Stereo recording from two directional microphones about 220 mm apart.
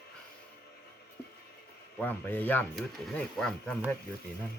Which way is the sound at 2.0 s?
10° left (ahead or behind).